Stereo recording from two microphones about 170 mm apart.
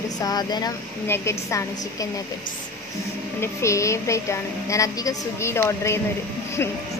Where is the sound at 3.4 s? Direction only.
15° left (ahead or behind).